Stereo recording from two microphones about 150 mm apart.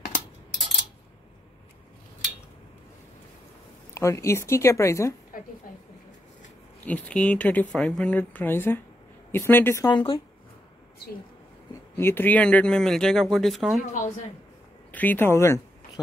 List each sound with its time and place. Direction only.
3.9 s speech: 20° left (ahead or behind)
5.3 s a woman's voice: 70° left (ahead or behind)
6.9 s speech: 10° left (ahead or behind)
9.8 s speech: 35° left (ahead or behind)
12.0 s speech: 15° left (ahead or behind)
14.9 s speech: 10° left (ahead or behind)